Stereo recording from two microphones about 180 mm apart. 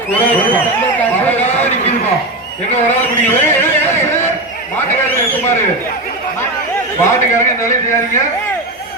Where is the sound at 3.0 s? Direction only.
10° left (ahead or behind).